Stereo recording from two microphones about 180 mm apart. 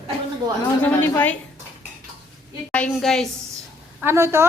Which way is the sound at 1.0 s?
10° left (ahead or behind).